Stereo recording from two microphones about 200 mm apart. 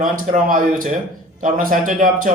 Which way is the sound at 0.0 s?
45° right (ahead or behind).